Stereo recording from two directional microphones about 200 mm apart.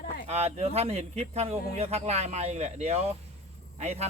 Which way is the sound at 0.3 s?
30° right (ahead or behind).